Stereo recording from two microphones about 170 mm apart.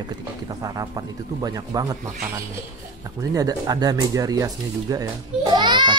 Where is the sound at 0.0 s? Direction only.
25° right (ahead or behind).